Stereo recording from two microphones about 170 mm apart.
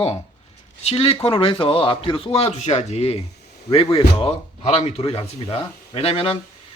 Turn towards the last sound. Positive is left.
turn(degrees=35)  # may be behind; listen again after turning